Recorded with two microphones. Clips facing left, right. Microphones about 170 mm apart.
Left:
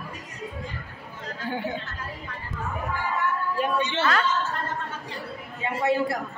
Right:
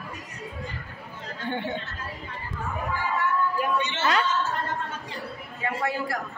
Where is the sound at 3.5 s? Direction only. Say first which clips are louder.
Left 1 dB; 25° left (ahead or behind).